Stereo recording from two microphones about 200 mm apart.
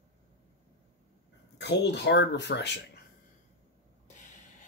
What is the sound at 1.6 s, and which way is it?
Speech, 60° left (ahead or behind).